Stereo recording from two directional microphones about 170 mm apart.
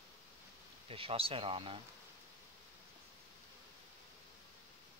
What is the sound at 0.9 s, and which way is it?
Speech, 35° right (ahead or behind).